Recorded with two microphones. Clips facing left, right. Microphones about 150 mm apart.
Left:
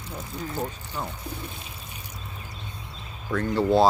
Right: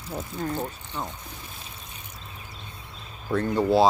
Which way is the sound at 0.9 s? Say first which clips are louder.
Even; centre (ahead or behind).